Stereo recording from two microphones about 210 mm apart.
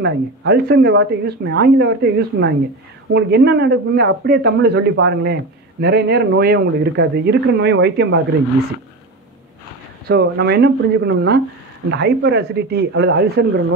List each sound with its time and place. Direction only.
0.0 s speech: 55° right (ahead or behind)
10.0 s speech: 50° right (ahead or behind)